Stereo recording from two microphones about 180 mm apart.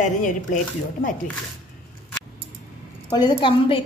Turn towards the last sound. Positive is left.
turn(degrees=30)  # may be behind; listen again after turning